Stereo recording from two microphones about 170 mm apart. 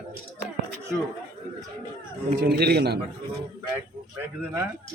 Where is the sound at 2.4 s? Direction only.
70° right (ahead or behind).